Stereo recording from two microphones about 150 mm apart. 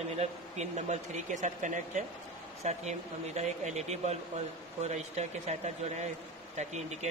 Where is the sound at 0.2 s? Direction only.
50° right (ahead or behind).